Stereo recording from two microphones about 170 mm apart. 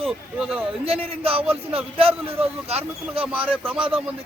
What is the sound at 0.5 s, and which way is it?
A man's voice, 35° right (ahead or behind).